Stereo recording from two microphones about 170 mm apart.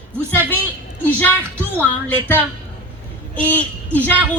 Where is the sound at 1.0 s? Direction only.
10° left (ahead or behind).